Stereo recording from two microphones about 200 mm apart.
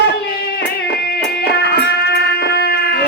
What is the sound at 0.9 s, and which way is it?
Music, 55° left (ahead or behind).